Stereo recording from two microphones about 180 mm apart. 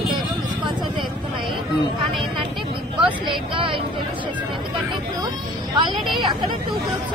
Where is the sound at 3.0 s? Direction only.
30° right (ahead or behind).